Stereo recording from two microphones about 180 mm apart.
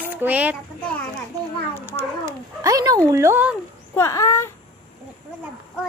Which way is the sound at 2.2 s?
20° right (ahead or behind).